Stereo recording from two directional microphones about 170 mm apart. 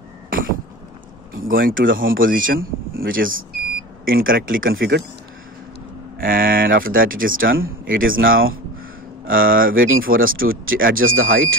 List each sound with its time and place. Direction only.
1.3 s speech: 60° right (ahead or behind)
6.1 s speech: 60° right (ahead or behind)